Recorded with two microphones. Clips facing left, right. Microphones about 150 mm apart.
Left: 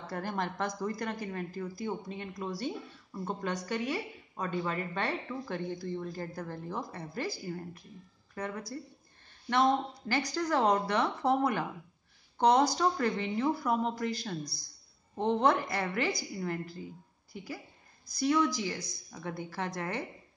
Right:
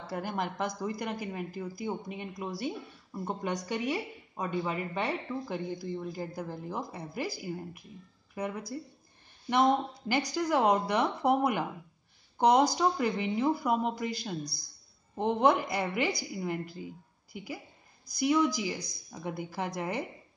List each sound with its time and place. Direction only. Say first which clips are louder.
0.0 s a woman's voice: right 1 dB; 5° right (ahead or behind)
18.1 s a woman's voice: right 1 dB; 10° right (ahead or behind)